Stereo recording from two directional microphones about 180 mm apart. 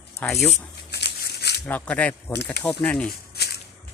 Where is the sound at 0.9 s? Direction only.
65° left (ahead or behind).